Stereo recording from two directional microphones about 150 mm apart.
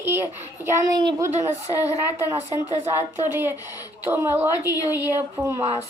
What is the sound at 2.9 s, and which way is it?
A woman's voice, 15° right (ahead or behind).